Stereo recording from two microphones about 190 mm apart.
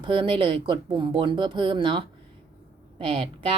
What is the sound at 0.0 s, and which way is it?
Speech, 25° right (ahead or behind).